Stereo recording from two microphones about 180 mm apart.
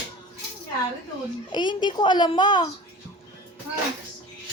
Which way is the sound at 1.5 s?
25° left (ahead or behind).